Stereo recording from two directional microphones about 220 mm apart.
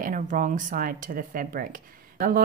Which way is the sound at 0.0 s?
35° right (ahead or behind).